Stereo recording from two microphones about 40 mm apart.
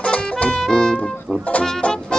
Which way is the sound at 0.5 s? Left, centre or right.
Centre.